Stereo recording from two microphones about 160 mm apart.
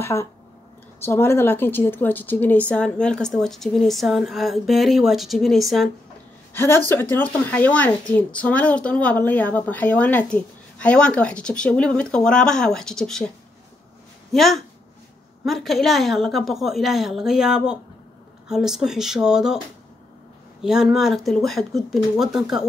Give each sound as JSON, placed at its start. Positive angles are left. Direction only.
{"t": 0.0, "sound": "a woman's voice", "side_deg": 15}
{"t": 6.5, "sound": "a woman's voice", "side_deg": 15}
{"t": 14.3, "sound": "a woman's voice", "side_deg": 0}
{"t": 20.6, "sound": "a woman's voice", "side_deg": 0}